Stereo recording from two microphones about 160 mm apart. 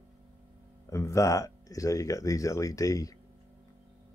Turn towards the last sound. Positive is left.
turn(degrees=20)  # may be behind; listen again after turning